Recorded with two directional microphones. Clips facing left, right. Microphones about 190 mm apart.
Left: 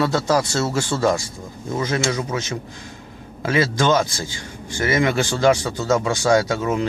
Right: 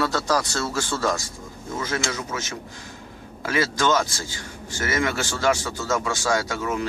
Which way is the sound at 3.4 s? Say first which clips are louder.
Left 4 dB; 20° left (ahead or behind).